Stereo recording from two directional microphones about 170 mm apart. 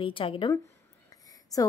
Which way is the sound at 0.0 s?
30° left (ahead or behind).